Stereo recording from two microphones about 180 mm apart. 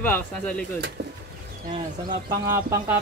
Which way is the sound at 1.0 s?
65° right (ahead or behind).